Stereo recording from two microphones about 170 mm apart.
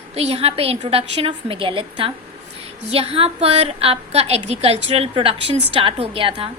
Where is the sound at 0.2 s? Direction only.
35° right (ahead or behind).